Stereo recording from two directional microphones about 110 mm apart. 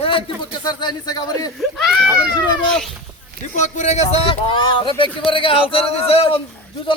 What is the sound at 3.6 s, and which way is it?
Speech, 90° left.